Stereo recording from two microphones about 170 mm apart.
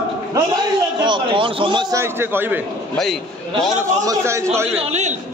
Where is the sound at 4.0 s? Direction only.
20° right (ahead or behind).